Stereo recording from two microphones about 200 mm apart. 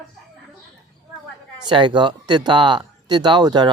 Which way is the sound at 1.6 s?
25° right (ahead or behind).